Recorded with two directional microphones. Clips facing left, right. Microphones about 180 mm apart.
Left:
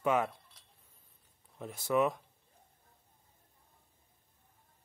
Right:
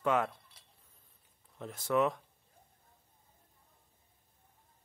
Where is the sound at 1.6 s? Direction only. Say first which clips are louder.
Even; 5° left (ahead or behind).